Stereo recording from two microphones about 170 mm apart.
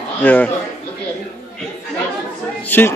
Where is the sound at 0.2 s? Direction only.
10° left (ahead or behind).